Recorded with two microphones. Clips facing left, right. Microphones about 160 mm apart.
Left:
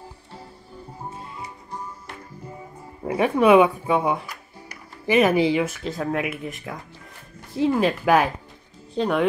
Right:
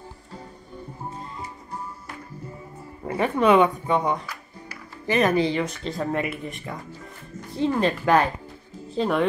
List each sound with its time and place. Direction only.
3.1 s speech: 10° left (ahead or behind)